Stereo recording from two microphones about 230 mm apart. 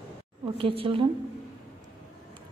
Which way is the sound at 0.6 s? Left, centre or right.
Right.